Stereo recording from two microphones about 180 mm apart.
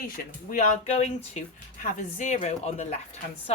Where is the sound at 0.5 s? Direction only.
35° left (ahead or behind).